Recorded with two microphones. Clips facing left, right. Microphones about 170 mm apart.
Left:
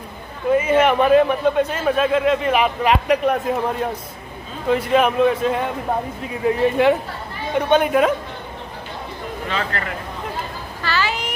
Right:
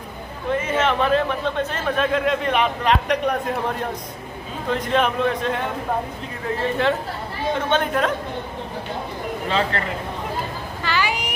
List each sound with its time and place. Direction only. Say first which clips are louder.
0.5 s a man's voice: left 6 dB; 10° left (ahead or behind)
4.6 s a man's voice: left 4 dB; 10° left (ahead or behind)
9.7 s speech: right 1 dB; 25° right (ahead or behind)
10.8 s a sound: left 1 dB; 15° right (ahead or behind)